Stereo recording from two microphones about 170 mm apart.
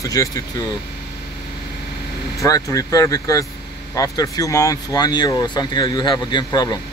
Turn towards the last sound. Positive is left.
turn(degrees=25)  # may be behind; listen again after turning